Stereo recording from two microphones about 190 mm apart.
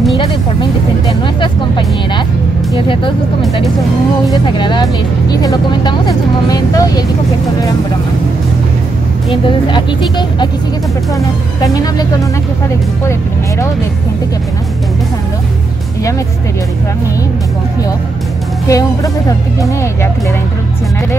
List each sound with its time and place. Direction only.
0.2 s speech: 25° left (ahead or behind)
9.3 s speech: 25° left (ahead or behind)
18.7 s speech: 20° left (ahead or behind)